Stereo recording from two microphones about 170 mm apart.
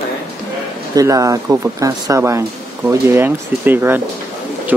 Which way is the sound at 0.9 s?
20° right (ahead or behind).